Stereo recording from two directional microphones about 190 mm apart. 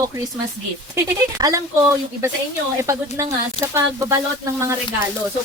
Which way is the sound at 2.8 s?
15° right (ahead or behind).